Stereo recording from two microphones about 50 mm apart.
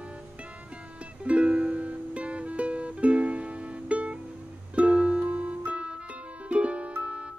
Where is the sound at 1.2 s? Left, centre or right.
Right.